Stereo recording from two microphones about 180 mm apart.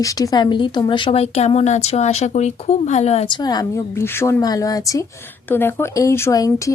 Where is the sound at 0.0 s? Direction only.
20° left (ahead or behind).